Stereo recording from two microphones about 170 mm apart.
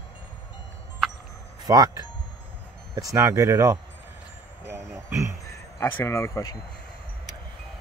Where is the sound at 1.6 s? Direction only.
20° right (ahead or behind).